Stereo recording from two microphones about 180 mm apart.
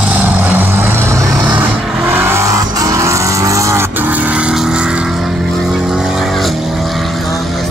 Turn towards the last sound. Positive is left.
turn(degrees=0)  # may be behind; listen again after turning